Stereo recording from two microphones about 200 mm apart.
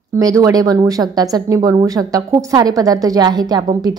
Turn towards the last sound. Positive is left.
turn(degrees=-20)  # may be behind; listen again after turning